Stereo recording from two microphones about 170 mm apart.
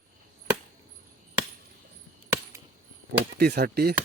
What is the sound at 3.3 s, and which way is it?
Speech, 70° right (ahead or behind).